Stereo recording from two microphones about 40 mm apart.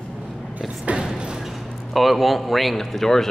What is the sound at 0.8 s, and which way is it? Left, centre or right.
Speech, right.